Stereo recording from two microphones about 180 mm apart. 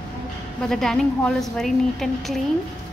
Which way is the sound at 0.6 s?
5° left (ahead or behind).